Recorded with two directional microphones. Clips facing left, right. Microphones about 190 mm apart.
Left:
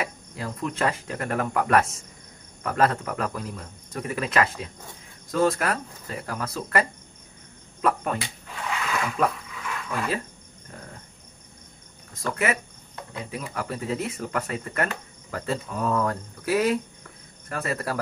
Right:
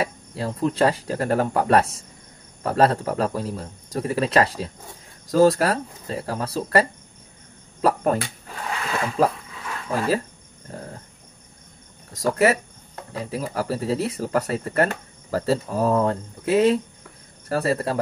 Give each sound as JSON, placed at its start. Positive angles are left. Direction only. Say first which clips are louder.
{"t": 0.0, "sound": "speech", "louder": "right 5 dB", "side_deg": -30}
{"t": 7.8, "sound": "a sound", "louder": "right 5 dB", "side_deg": -40}
{"t": 10.7, "sound": "cricket", "louder": "right 7 dB", "side_deg": -35}
{"t": 12.1, "sound": "speech", "louder": "right 7 dB", "side_deg": -40}